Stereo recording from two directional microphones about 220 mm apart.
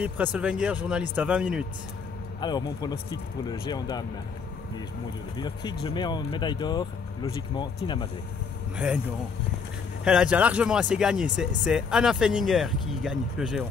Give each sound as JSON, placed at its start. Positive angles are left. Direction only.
{"t": 0.0, "sound": "speech", "side_deg": -5}
{"t": 2.4, "sound": "speech", "side_deg": 20}
{"t": 5.4, "sound": "speech", "side_deg": 20}
{"t": 8.7, "sound": "speech", "side_deg": -5}
{"t": 10.0, "sound": "speech", "side_deg": -5}